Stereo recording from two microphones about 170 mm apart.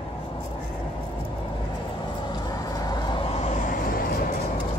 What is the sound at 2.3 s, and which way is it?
Vehicle, 20° left (ahead or behind).